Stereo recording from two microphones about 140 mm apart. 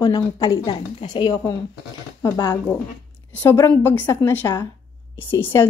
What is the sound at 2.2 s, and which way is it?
A woman's voice, 15° left (ahead or behind).